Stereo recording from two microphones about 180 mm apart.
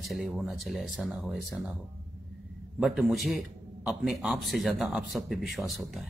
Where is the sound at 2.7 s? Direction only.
5° right (ahead or behind).